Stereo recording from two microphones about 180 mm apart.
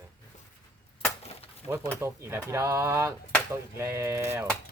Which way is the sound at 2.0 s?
15° right (ahead or behind).